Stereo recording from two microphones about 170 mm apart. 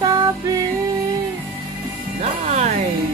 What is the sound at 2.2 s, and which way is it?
Music, 40° right (ahead or behind).